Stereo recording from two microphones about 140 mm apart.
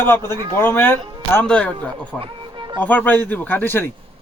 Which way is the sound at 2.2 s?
35° right (ahead or behind).